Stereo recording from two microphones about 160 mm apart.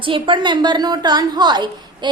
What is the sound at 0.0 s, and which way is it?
A woman's voice, 30° right (ahead or behind).